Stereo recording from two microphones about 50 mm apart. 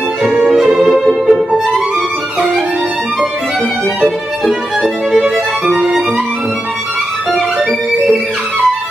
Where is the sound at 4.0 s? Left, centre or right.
Centre.